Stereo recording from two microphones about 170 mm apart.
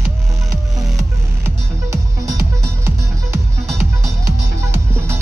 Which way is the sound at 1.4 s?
15° right (ahead or behind).